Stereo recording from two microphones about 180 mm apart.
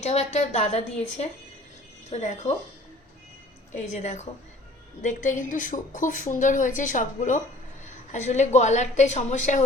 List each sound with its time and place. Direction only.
0.0 s a woman's voice: 35° left (ahead or behind)
3.8 s a woman's voice: 40° left (ahead or behind)